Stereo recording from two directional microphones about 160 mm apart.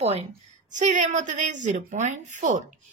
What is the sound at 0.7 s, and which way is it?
A woman's voice, 50° right (ahead or behind).